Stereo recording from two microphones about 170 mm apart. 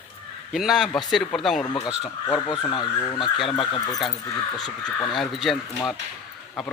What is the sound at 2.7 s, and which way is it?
Speech, 25° left (ahead or behind).